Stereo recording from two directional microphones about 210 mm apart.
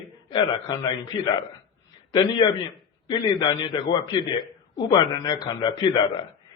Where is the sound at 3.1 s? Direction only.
20° left (ahead or behind).